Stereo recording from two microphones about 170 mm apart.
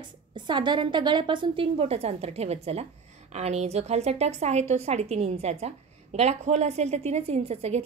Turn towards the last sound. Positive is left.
turn(degrees=-40)  # may be behind; listen again after turning